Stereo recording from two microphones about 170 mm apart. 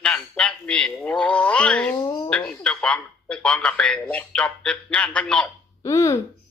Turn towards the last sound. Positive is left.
turn(degrees=15)  # may be behind; listen again after turning